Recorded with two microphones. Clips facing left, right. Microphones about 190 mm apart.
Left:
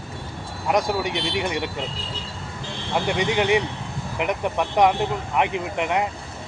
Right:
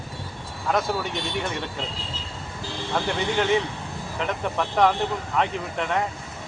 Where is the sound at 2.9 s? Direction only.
15° left (ahead or behind).